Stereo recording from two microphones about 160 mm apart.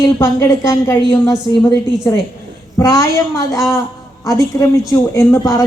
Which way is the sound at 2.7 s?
20° left (ahead or behind).